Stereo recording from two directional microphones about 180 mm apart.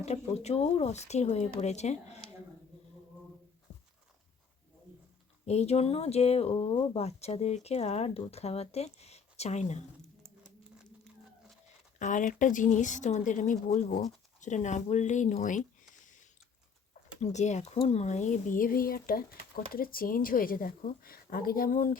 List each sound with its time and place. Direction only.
0.0 s speech: 35° left (ahead or behind)
5.5 s speech: 35° left (ahead or behind)
10.2 s a sound: 5° left (ahead or behind)
11.9 s speech: 45° left (ahead or behind)
17.2 s speech: 40° left (ahead or behind)